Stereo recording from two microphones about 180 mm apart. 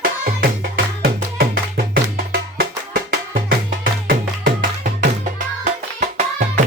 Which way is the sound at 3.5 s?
55° right (ahead or behind).